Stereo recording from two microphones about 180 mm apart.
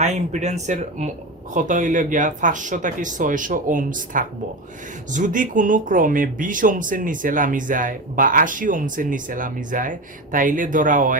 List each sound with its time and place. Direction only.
0.0 s speech: 40° right (ahead or behind)